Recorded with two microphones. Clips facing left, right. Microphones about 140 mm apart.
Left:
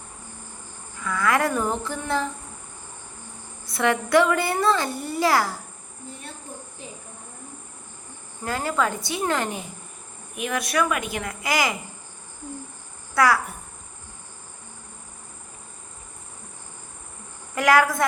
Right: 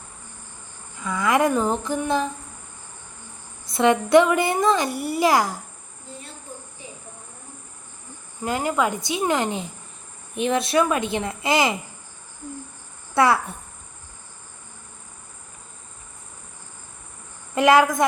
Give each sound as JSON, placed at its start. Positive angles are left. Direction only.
{"t": 0.9, "sound": "a woman's voice", "side_deg": -20}
{"t": 3.7, "sound": "speech", "side_deg": -20}
{"t": 8.4, "sound": "a woman's voice", "side_deg": -20}
{"t": 13.1, "sound": "speech", "side_deg": -25}
{"t": 17.5, "sound": "a woman's voice", "side_deg": -20}